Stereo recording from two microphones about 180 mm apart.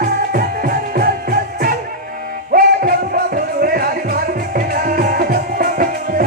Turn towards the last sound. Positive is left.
turn(degrees=-50)  # may be behind; listen again after turning